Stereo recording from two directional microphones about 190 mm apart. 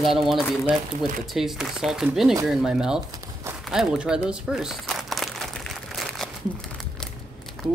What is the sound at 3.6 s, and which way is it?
Crumpling, centre (ahead or behind).